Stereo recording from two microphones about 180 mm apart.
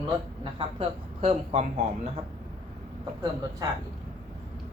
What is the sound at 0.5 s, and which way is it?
Speech, 35° right (ahead or behind).